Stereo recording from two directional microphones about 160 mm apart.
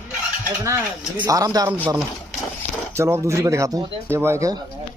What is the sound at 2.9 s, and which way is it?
Speech, 15° right (ahead or behind).